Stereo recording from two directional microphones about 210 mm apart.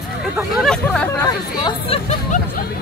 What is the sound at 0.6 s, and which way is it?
Speech, 5° left (ahead or behind).